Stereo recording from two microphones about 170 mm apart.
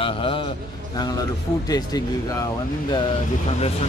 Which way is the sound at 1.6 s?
20° left (ahead or behind).